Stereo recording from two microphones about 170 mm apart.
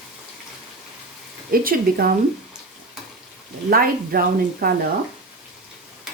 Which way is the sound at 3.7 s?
60° right (ahead or behind).